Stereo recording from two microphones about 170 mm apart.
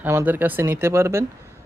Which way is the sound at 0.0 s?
10° right (ahead or behind).